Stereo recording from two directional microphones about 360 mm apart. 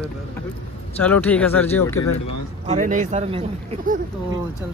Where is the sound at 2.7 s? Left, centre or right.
Right.